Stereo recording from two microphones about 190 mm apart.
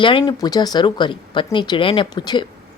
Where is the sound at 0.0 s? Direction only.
25° left (ahead or behind).